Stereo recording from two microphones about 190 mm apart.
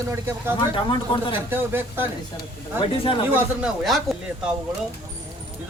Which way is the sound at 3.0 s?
25° left (ahead or behind).